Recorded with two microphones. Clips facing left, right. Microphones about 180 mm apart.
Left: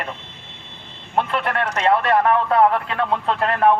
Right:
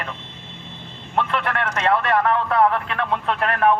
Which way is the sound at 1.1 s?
30° left (ahead or behind).